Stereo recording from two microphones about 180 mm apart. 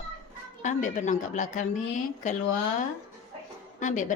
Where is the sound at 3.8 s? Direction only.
45° left (ahead or behind).